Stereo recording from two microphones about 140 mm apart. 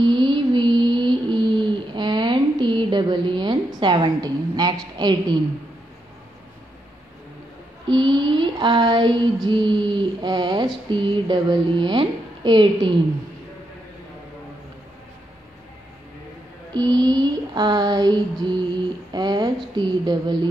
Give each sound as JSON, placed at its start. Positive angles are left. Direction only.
{"t": 0.0, "sound": "mantra", "side_deg": -35}
{"t": 7.9, "sound": "mantra", "side_deg": -35}
{"t": 16.7, "sound": "female singing", "side_deg": -30}
{"t": 19.1, "sound": "mantra", "side_deg": -30}